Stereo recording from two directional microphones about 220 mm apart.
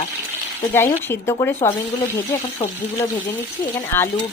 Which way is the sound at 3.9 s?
10° left (ahead or behind).